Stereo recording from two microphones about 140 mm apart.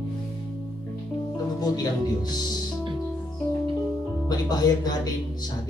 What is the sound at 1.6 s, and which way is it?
Speech, 30° left (ahead or behind).